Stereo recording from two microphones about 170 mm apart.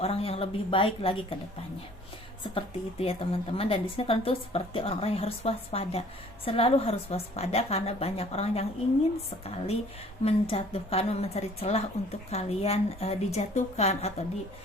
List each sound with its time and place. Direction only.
0.0 s a woman's voice: 35° left (ahead or behind)
2.4 s a woman's voice: 35° left (ahead or behind)